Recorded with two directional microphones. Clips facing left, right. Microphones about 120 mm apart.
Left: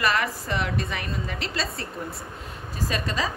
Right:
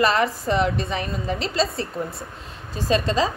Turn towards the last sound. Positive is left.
turn(degrees=-25)  # may be behind; listen again after turning